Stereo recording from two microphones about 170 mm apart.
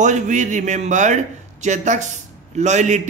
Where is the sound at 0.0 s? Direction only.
45° right (ahead or behind).